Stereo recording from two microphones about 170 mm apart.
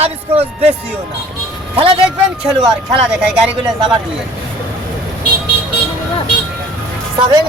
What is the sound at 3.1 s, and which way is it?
Speech, 5° right (ahead or behind).